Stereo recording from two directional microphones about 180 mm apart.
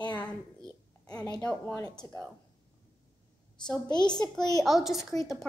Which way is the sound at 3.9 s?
25° left (ahead or behind).